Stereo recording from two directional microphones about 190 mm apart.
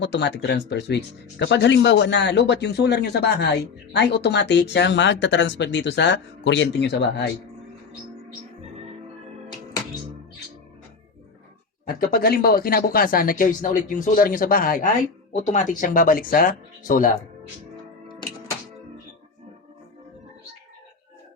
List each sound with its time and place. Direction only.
0.0 s speech: 65° left (ahead or behind)
11.9 s speech: 50° left (ahead or behind)